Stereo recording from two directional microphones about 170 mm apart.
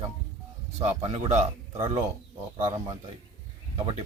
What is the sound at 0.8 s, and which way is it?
Speech, 40° right (ahead or behind).